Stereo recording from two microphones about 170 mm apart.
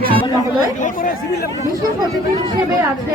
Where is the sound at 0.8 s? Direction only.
50° left (ahead or behind).